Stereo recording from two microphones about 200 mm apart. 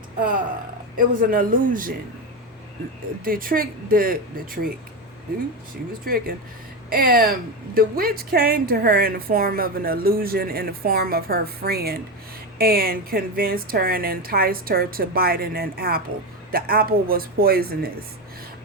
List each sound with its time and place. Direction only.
0.9 s a woman's voice: 45° right (ahead or behind)
3.2 s a woman's voice: 45° right (ahead or behind)
6.1 s a woman's voice: 50° right (ahead or behind)